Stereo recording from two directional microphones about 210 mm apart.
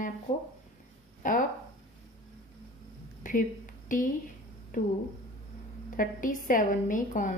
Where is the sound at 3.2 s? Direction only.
40° left (ahead or behind).